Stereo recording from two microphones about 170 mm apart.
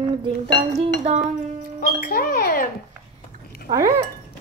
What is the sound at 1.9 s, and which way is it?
Speech, 60° left (ahead or behind).